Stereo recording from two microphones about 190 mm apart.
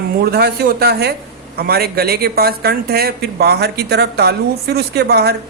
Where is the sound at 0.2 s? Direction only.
55° right (ahead or behind).